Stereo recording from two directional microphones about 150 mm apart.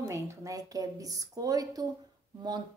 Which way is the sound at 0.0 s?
20° right (ahead or behind).